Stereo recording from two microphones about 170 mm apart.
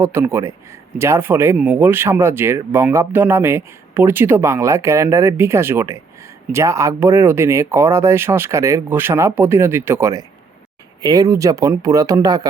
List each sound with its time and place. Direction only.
0.0 s speech: 15° right (ahead or behind)